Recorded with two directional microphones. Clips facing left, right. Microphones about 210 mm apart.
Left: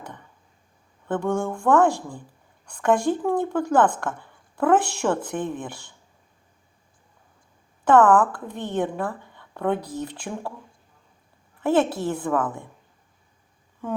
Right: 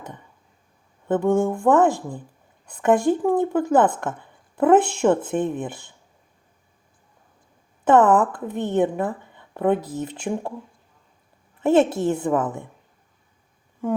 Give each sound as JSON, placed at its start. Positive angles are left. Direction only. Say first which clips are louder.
{"t": 1.0, "sound": "a woman's voice", "louder": "right 5 dB", "side_deg": -20}
{"t": 7.9, "sound": "a woman's voice", "louder": "right 1 dB", "side_deg": -20}
{"t": 11.6, "sound": "a woman's voice", "louder": "right 4 dB", "side_deg": -25}